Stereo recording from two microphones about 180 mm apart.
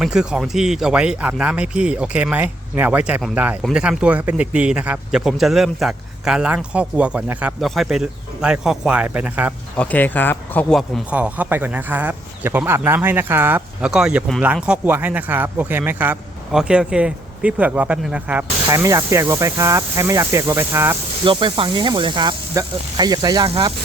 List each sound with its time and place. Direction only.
0.0 s speech: 5° right (ahead or behind)
9.7 s speech: 10° left (ahead or behind); by 20.9 s 15° right (ahead or behind)
21.2 s speech: 30° right (ahead or behind)